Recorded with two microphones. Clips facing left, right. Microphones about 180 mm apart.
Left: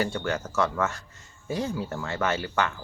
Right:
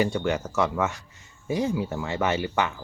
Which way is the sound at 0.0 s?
15° right (ahead or behind).